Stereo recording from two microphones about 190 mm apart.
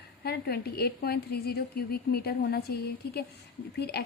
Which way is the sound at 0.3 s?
55° left (ahead or behind).